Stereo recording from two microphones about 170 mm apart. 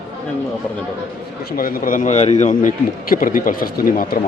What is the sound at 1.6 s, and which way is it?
Speech, 55° left (ahead or behind).